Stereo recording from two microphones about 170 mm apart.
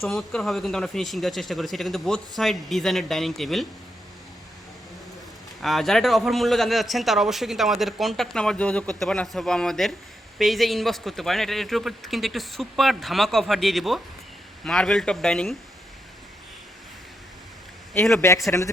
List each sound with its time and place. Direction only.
0.0 s a man's voice: 5° left (ahead or behind)
5.6 s a man's voice: centre (ahead or behind)
18.2 s speech: 15° left (ahead or behind)